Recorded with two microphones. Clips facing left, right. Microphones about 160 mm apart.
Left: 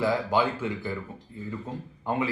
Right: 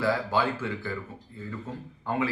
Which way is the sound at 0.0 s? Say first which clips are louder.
Left 1 dB; 15° left (ahead or behind).